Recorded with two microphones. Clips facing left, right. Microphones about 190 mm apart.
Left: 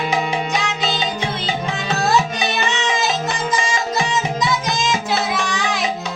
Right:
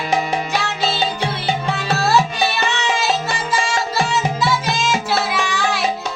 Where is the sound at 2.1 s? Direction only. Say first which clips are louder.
Right 2 dB; 20° left (ahead or behind).